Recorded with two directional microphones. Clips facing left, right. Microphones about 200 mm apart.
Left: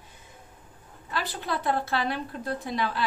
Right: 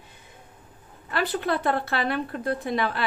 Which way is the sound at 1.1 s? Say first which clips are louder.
Right 6 dB; 60° right (ahead or behind).